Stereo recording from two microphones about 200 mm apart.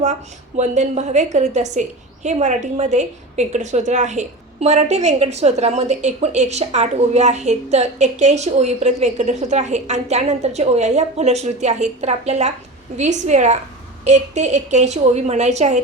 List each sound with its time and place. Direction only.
0.5 s a woman's voice: 35° right (ahead or behind)